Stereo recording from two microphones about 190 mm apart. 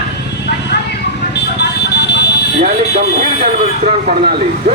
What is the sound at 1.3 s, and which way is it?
Vehicle, 60° left (ahead or behind).